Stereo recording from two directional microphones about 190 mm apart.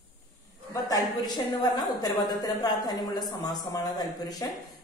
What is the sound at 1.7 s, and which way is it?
A woman's voice, 20° left (ahead or behind).